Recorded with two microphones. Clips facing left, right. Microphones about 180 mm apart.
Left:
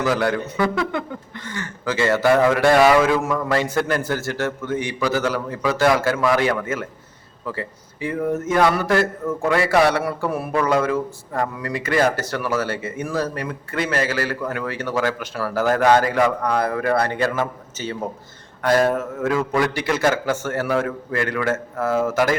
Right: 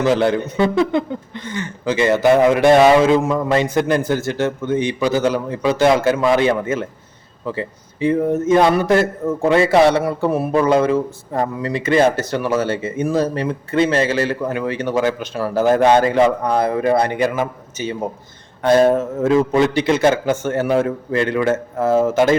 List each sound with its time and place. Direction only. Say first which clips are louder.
0.0 s speech: right 5 dB; 25° right (ahead or behind)